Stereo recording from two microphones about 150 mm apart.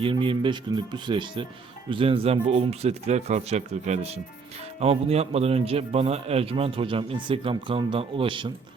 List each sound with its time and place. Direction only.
0.0 s a man's voice: 35° right (ahead or behind)